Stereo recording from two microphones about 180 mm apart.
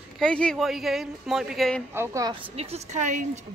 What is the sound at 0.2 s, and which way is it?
Speech, 5° left (ahead or behind).